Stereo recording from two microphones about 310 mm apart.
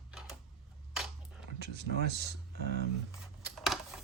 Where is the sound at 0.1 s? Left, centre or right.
Centre.